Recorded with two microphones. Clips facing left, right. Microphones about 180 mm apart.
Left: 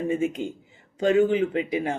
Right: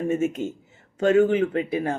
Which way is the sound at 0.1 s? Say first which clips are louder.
Right 1 dB; 15° left (ahead or behind).